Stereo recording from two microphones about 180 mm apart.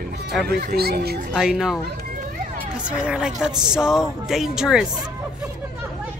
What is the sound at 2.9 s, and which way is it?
A woman's voice, 5° right (ahead or behind).